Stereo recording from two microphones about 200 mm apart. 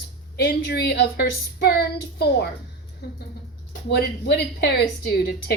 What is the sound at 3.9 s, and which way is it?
Speech, 55° left (ahead or behind).